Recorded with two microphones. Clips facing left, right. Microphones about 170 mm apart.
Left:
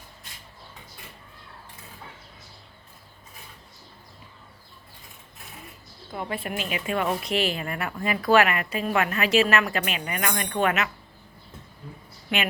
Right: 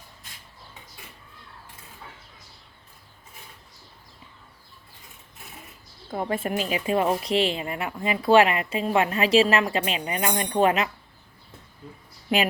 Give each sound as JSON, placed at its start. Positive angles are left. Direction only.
{"t": 6.1, "sound": "a woman's voice", "side_deg": -40}